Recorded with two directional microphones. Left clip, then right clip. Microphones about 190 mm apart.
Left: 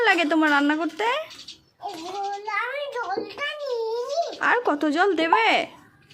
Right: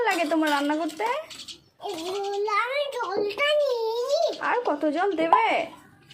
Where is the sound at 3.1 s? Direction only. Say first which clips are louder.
Right 4 dB; 15° left (ahead or behind).